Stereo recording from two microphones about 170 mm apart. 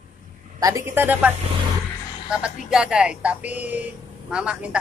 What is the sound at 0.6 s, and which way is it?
A woman's voice, 20° right (ahead or behind).